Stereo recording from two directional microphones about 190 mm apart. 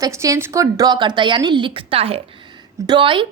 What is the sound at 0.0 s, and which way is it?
A woman's voice, 15° right (ahead or behind).